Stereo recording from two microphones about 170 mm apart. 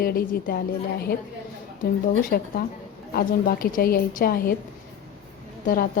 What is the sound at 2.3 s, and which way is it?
A woman's voice, 55° left (ahead or behind).